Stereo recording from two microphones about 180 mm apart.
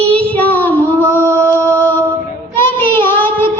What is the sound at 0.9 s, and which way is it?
Mantra, 15° left (ahead or behind).